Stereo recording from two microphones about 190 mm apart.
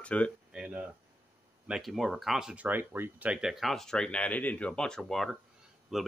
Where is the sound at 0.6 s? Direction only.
5° right (ahead or behind).